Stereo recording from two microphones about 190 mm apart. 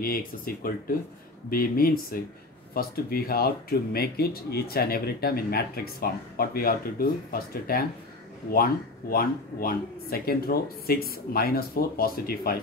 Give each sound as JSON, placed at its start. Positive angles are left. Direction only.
{"t": 0.0, "sound": "speech", "side_deg": 50}
{"t": 9.1, "sound": "speech", "side_deg": 50}